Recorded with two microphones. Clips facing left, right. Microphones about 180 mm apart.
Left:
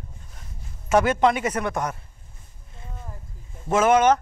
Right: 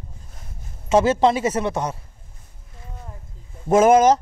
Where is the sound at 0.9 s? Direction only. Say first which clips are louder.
Right 3 dB; 25° right (ahead or behind).